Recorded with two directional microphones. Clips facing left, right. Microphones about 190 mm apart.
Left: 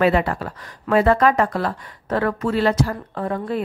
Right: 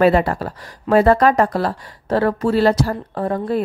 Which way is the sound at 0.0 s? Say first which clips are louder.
Right 3 dB; 40° right (ahead or behind).